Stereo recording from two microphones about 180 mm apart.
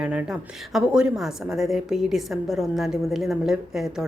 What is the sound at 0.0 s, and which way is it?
A woman's voice, 5° right (ahead or behind).